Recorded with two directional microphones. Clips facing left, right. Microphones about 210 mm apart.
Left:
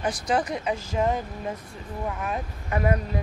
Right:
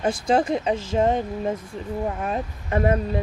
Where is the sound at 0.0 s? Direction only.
25° right (ahead or behind).